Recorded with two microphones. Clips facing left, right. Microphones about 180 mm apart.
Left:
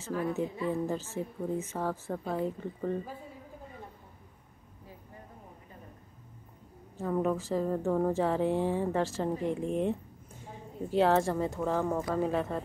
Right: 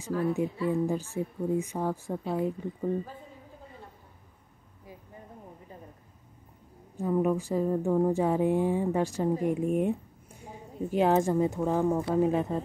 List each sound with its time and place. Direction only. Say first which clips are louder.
0.7 s a woman's voice: right 4 dB; 10° right (ahead or behind)
7.0 s a woman's voice: right 3 dB; 10° right (ahead or behind)